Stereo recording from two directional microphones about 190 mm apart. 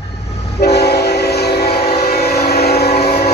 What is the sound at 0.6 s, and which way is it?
Train, 60° left (ahead or behind).